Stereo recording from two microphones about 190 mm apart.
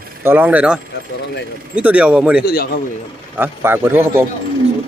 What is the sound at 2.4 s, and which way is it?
Speech, 55° left (ahead or behind).